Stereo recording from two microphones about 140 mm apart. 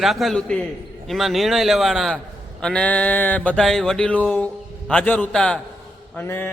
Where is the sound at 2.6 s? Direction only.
5° left (ahead or behind).